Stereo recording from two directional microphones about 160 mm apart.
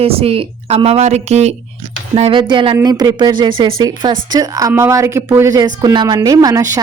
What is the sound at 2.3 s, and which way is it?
A woman's voice, 30° right (ahead or behind).